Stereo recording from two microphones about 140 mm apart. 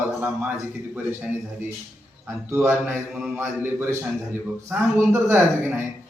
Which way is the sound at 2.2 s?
15° right (ahead or behind).